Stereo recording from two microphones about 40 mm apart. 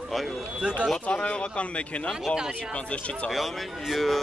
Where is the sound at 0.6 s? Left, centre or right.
Right.